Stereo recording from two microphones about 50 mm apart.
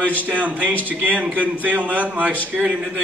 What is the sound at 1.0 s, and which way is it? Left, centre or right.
A man's voice, right.